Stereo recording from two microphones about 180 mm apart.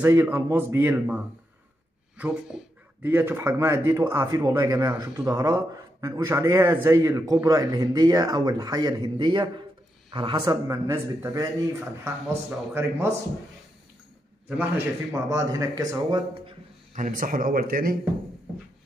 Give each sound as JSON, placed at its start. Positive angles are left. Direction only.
{"t": 0.0, "sound": "speech", "side_deg": -10}
{"t": 15.2, "sound": "speech", "side_deg": -20}
{"t": 16.9, "sound": "a man's voice", "side_deg": -45}